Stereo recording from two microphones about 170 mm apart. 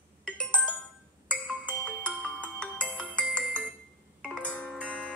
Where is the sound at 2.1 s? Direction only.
Centre (ahead or behind).